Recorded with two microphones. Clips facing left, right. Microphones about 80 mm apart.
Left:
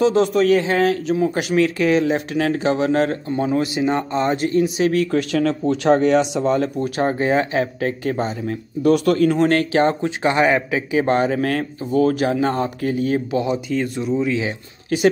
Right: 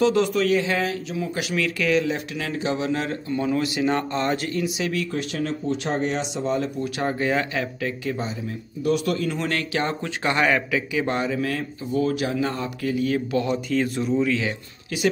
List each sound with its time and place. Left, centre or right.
0.2 s speech: left
4.6 s speech: left
5.1 s speech: left
6.4 s speech: left
10.2 s speech: left
13.5 s speech: centre